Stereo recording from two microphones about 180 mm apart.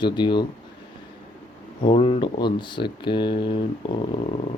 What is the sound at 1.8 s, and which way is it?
Speech, 30° left (ahead or behind).